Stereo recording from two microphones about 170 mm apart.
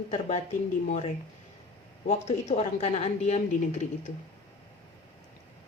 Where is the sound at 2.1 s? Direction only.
40° left (ahead or behind).